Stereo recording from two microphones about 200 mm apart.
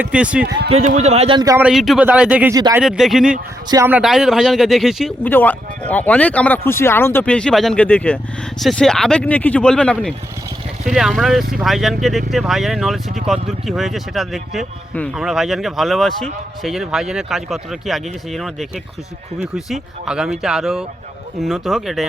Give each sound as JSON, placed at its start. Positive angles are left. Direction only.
{"t": 0.0, "sound": "a man's voice", "side_deg": -5}
{"t": 0.7, "sound": "a man's voice", "side_deg": -35}
{"t": 1.5, "sound": "a man's voice", "side_deg": -5}
{"t": 2.6, "sound": "speech", "side_deg": -20}
{"t": 2.8, "sound": "a man's voice", "side_deg": 0}
{"t": 3.7, "sound": "a man's voice", "side_deg": -15}